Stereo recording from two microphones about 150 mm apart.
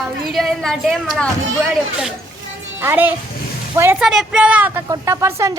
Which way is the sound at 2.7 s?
15° right (ahead or behind).